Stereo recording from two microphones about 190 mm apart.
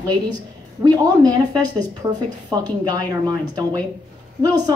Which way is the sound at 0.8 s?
20° right (ahead or behind).